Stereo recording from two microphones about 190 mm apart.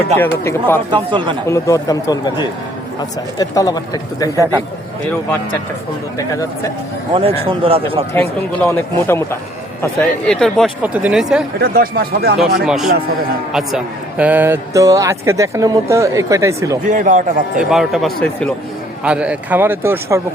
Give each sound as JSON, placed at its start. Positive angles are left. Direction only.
{"t": 0.2, "sound": "speech", "side_deg": 10}
{"t": 0.9, "sound": "a man's voice", "side_deg": -25}
{"t": 1.5, "sound": "speech", "side_deg": 15}
{"t": 6.1, "sound": "speech", "side_deg": 15}
{"t": 7.1, "sound": "a man's voice", "side_deg": -30}
{"t": 8.1, "sound": "speech", "side_deg": 10}
{"t": 11.6, "sound": "speech", "side_deg": -55}
{"t": 12.4, "sound": "a man's voice", "side_deg": 0}
{"t": 16.9, "sound": "a man's voice", "side_deg": -45}
{"t": 17.6, "sound": "speech", "side_deg": 0}
{"t": 19.0, "sound": "a man's voice", "side_deg": -5}